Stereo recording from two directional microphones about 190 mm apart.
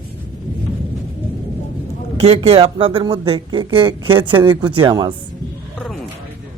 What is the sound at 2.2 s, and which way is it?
Speech, 30° right (ahead or behind).